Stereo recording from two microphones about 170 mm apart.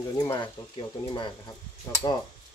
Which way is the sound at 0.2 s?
25° left (ahead or behind).